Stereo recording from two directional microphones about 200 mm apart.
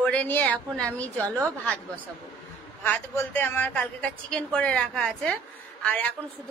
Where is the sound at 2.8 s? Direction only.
10° left (ahead or behind).